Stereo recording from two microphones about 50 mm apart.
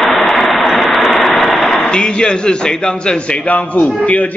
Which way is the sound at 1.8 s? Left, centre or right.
Centre.